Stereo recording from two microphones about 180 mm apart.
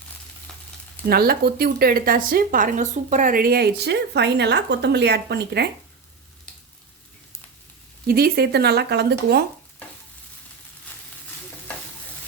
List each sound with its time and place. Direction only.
1.0 s speech: 55° right (ahead or behind)
8.0 s speech: 55° right (ahead or behind)